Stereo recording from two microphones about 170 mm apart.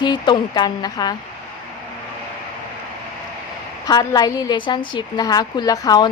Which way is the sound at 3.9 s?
25° left (ahead or behind).